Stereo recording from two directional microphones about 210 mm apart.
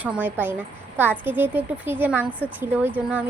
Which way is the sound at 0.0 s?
10° right (ahead or behind).